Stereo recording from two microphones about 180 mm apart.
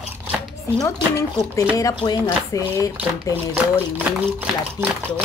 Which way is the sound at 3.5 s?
10° right (ahead or behind).